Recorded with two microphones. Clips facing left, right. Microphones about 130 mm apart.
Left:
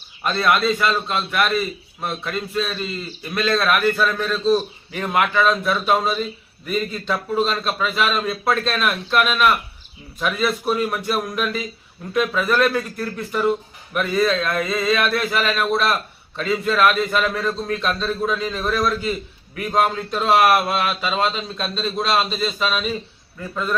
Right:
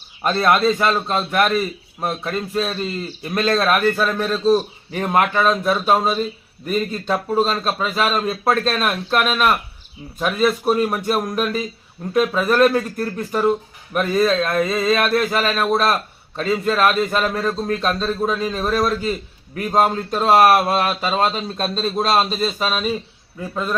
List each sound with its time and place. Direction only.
0.2 s speech: 40° right (ahead or behind)